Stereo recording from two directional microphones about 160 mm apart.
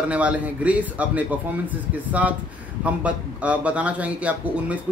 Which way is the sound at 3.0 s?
10° right (ahead or behind).